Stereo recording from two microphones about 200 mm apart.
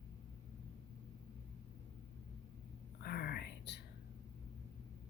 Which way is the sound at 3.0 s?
50° left (ahead or behind).